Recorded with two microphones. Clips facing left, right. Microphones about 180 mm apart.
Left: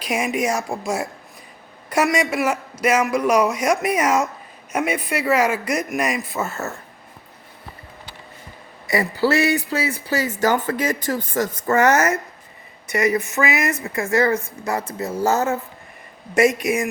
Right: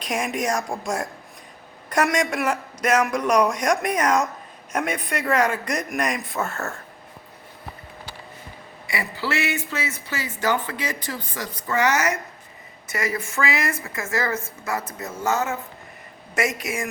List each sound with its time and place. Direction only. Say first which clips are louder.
0.0 s a man's voice: left 3 dB; 5° left (ahead or behind)
8.9 s speech: left 8 dB; 40° left (ahead or behind)
13.3 s speech: left 4 dB; 20° left (ahead or behind); by 15.5 s 40° left (ahead or behind)
16.5 s speech: left 7 dB; 25° right (ahead or behind)